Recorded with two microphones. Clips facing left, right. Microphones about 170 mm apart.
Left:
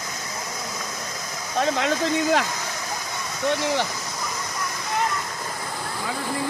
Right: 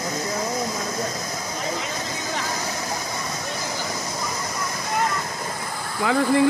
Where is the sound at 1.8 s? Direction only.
75° left (ahead or behind).